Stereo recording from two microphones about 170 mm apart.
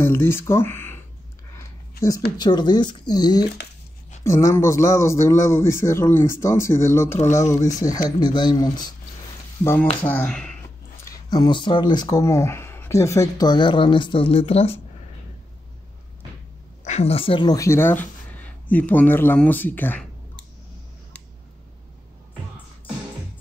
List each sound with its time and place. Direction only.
0.0 s speech: 15° left (ahead or behind)
2.3 s speech: 25° left (ahead or behind)
10.0 s speech: 5° left (ahead or behind)
11.1 s speech: 25° left (ahead or behind)
16.8 s speech: 40° left (ahead or behind); by 20.1 s 10° left (ahead or behind)